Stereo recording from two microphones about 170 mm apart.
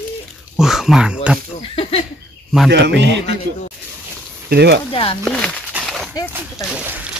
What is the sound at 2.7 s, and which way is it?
Speech, 85° right.